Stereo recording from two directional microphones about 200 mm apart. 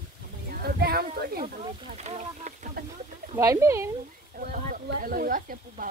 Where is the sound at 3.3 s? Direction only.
15° right (ahead or behind).